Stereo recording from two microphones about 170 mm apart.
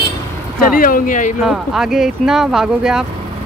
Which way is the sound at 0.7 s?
55° left (ahead or behind).